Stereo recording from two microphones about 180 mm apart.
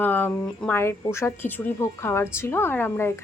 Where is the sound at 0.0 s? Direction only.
10° left (ahead or behind).